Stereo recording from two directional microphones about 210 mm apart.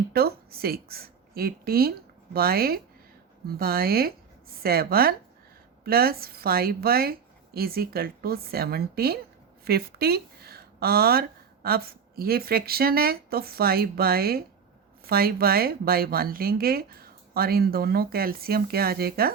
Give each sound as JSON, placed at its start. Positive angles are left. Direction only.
{"t": 0.1, "sound": "a woman's voice", "side_deg": -45}